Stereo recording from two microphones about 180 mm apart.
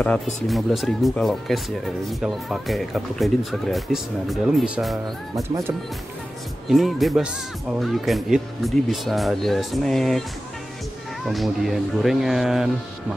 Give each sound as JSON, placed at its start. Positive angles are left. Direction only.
{"t": 0.5, "sound": "speech", "side_deg": 0}
{"t": 5.3, "sound": "speech", "side_deg": -15}
{"t": 6.7, "sound": "speech", "side_deg": 0}
{"t": 11.2, "sound": "speech", "side_deg": 0}